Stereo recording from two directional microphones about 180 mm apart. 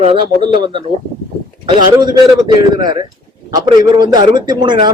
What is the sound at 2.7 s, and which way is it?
A man's voice, 25° right (ahead or behind).